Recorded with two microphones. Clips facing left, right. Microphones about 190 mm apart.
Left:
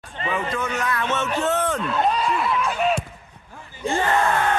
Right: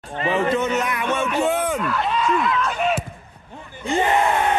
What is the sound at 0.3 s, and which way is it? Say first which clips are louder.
A man's voice: right 6 dB; 25° right (ahead or behind).